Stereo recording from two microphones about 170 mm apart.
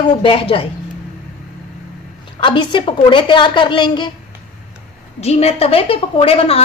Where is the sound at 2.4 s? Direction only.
30° left (ahead or behind).